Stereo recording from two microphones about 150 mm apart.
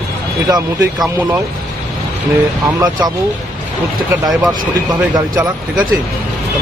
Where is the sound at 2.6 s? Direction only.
25° right (ahead or behind).